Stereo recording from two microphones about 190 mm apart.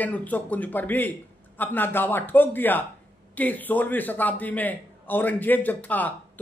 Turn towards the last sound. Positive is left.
turn(degrees=10)  # may be behind; listen again after turning